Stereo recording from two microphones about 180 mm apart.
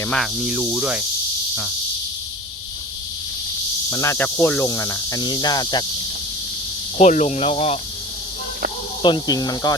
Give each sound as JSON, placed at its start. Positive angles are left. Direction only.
{"t": 0.1, "sound": "cricket", "side_deg": -5}
{"t": 3.8, "sound": "speech", "side_deg": 15}
{"t": 4.7, "sound": "snake", "side_deg": 20}
{"t": 7.0, "sound": "speech", "side_deg": 40}
{"t": 9.0, "sound": "snake", "side_deg": 25}